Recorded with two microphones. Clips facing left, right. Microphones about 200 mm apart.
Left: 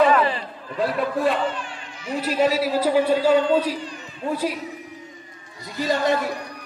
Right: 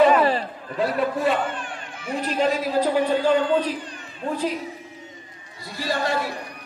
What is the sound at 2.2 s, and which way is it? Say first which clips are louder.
A man's voice: left 2 dB; 5° left (ahead or behind).